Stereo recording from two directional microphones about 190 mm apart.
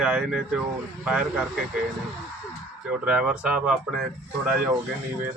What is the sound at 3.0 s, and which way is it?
Speech, 5° right (ahead or behind).